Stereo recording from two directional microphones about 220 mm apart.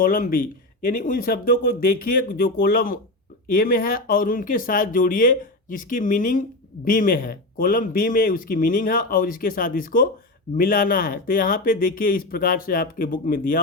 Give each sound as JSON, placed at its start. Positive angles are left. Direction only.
{"t": 0.0, "sound": "speech", "side_deg": 40}